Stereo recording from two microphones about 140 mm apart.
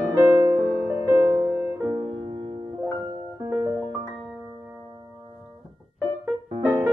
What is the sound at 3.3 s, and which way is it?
Music, 25° right (ahead or behind).